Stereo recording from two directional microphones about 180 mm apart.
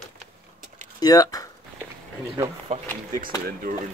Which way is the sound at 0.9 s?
20° left (ahead or behind).